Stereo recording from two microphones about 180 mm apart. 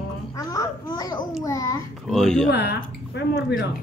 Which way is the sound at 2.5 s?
70° left (ahead or behind).